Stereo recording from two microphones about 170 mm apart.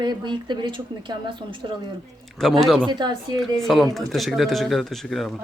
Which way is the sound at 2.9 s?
25° right (ahead or behind).